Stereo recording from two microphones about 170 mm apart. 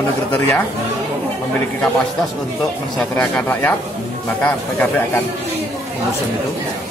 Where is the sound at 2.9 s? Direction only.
5° left (ahead or behind).